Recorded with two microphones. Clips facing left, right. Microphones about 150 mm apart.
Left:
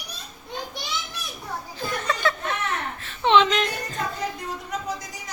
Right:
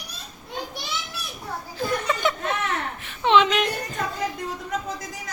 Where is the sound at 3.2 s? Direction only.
10° right (ahead or behind).